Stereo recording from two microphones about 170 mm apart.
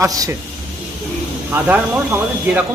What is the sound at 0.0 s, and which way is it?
Speech, 15° right (ahead or behind).